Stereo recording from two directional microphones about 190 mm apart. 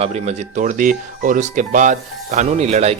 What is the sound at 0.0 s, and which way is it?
Speech, 35° right (ahead or behind).